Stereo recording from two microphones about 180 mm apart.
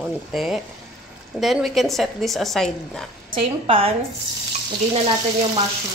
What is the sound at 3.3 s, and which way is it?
Speech, 30° right (ahead or behind).